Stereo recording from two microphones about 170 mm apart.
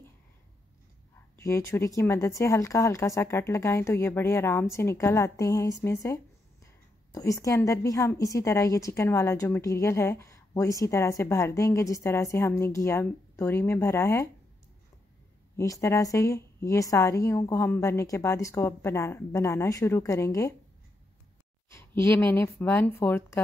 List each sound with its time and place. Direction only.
1.4 s a woman's voice: 15° left (ahead or behind)
15.5 s a woman's voice: 20° left (ahead or behind)
22.0 s a woman's voice: 15° left (ahead or behind)